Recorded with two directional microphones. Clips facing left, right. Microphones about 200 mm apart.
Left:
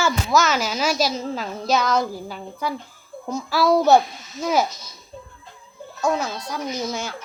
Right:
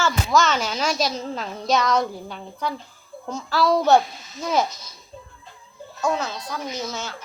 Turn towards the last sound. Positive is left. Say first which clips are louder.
# left 3 dB
turn(degrees=10)  # may be behind; listen again after turning